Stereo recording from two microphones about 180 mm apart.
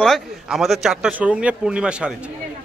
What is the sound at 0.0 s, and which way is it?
Speech, centre (ahead or behind).